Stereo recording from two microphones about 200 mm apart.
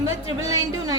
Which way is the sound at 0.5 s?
20° right (ahead or behind).